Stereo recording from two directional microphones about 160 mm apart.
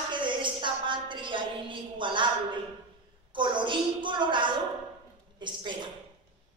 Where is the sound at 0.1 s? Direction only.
30° right (ahead or behind).